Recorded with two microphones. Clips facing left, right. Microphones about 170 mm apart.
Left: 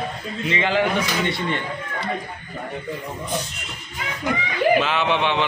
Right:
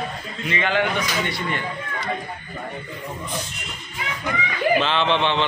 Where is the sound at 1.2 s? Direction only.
25° left (ahead or behind).